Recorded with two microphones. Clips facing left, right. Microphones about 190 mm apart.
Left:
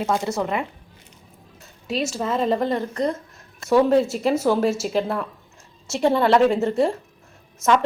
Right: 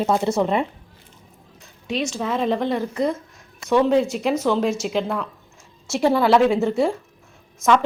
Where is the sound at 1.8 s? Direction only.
5° left (ahead or behind).